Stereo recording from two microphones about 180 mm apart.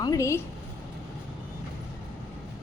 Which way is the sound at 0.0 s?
20° left (ahead or behind).